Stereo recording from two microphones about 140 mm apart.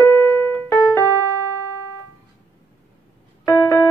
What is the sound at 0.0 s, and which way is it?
Keyboard, 10° left (ahead or behind).